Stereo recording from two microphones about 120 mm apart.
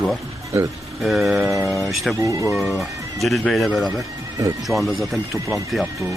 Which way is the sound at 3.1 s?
Centre (ahead or behind).